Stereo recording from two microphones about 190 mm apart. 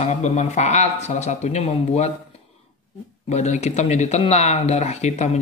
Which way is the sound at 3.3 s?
35° left (ahead or behind).